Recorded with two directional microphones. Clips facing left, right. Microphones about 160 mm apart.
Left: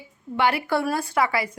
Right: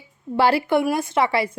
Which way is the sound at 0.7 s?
20° right (ahead or behind).